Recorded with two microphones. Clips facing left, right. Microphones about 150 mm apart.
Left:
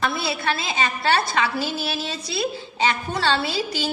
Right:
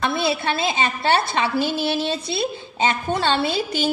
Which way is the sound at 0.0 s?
25° right (ahead or behind).